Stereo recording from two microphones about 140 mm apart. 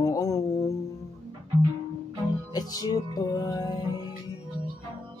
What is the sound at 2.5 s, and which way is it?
Music, 25° left (ahead or behind).